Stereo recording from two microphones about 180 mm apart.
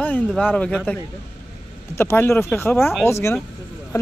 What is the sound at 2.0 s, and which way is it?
Speech, 15° left (ahead or behind).